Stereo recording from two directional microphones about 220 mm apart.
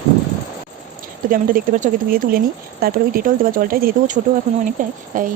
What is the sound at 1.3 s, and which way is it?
Speech, 40° right (ahead or behind).